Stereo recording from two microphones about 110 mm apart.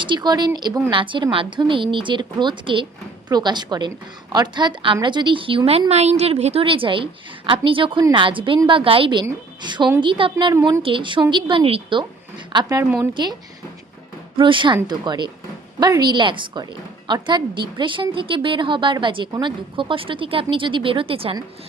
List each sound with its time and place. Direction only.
0.0 s a woman's voice: 45° right (ahead or behind); by 5.8 s 60° right (ahead or behind)
5.9 s a woman's voice: 80° right; by 12.0 s 55° right (ahead or behind)
12.5 s a woman's voice: 35° right (ahead or behind)
14.3 s a woman's voice: 50° right (ahead or behind)